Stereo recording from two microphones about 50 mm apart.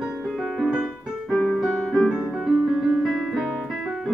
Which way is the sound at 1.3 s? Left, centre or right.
Centre.